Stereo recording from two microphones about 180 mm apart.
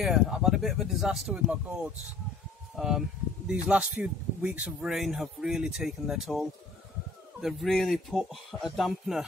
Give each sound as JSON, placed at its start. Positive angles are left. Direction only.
{"t": 0.0, "sound": "speech", "side_deg": 0}
{"t": 7.4, "sound": "speech", "side_deg": 0}